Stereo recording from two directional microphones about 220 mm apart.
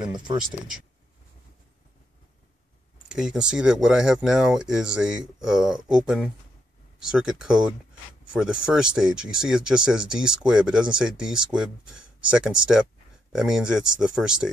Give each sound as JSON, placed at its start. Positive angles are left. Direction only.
{"t": 0.1, "sound": "speech", "side_deg": -20}
{"t": 3.1, "sound": "speech", "side_deg": -5}